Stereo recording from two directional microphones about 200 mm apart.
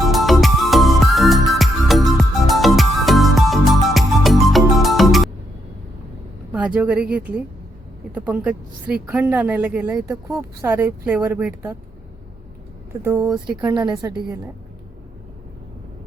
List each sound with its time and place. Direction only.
0.0 s music: centre (ahead or behind)
6.5 s a woman's voice: 5° right (ahead or behind)
13.0 s a woman's voice: 10° right (ahead or behind)